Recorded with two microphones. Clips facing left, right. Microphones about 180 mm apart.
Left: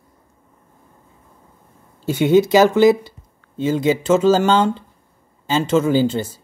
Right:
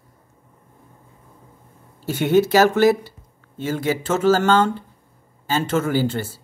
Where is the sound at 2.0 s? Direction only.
15° left (ahead or behind).